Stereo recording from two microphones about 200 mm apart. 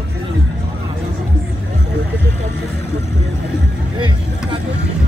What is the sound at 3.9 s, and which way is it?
Vehicle, 25° right (ahead or behind).